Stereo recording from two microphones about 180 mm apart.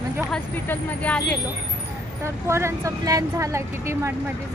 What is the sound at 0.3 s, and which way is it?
Speech, 5° left (ahead or behind).